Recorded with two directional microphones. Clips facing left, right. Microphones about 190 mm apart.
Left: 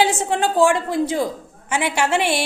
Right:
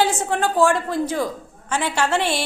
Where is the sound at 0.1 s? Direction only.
20° left (ahead or behind).